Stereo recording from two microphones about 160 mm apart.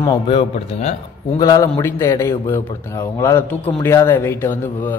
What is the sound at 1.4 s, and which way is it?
A man's voice, 25° left (ahead or behind).